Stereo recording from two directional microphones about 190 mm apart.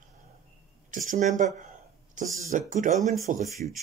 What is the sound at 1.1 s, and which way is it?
Speech, 40° right (ahead or behind).